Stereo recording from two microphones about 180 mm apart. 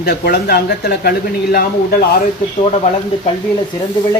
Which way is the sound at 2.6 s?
30° left (ahead or behind).